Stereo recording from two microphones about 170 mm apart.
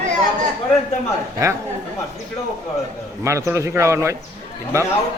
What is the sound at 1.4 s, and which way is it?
Speech, 20° right (ahead or behind).